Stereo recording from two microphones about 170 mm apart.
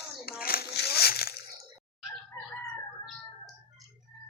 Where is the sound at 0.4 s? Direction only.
65° left (ahead or behind).